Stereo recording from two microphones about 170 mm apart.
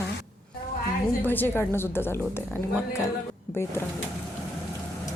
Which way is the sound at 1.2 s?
10° left (ahead or behind).